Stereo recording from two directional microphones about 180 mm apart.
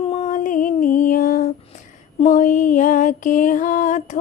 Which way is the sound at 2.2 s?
45° left (ahead or behind).